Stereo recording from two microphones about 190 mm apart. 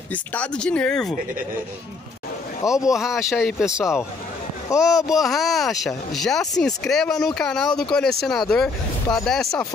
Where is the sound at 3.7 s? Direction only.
15° left (ahead or behind).